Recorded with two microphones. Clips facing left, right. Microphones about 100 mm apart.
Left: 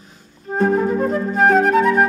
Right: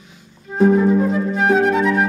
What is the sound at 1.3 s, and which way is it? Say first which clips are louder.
Music: left 2 dB; 45° left (ahead or behind).